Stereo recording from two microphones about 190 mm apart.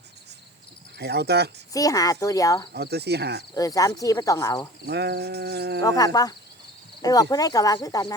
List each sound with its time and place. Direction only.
0.9 s sheep: 60° right (ahead or behind)
1.7 s speech: 20° left (ahead or behind)
2.7 s sheep: 60° right (ahead or behind)
3.5 s speech: 20° left (ahead or behind)
4.9 s sheep: 60° right (ahead or behind)
5.8 s speech: 20° left (ahead or behind)